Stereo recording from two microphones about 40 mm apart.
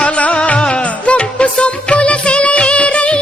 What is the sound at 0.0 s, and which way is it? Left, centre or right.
Music, left.